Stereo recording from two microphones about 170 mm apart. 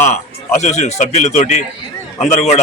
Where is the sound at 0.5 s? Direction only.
45° left (ahead or behind).